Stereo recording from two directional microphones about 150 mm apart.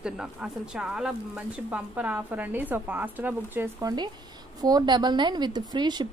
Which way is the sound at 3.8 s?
30° right (ahead or behind).